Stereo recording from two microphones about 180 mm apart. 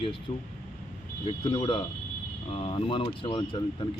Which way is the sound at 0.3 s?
25° left (ahead or behind).